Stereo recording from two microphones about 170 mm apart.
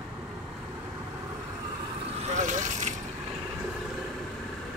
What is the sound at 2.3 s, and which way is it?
Vehicle, 45° right (ahead or behind).